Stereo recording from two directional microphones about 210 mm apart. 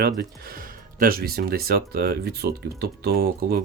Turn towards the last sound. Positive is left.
turn(degrees=-50)  # may be behind; listen again after turning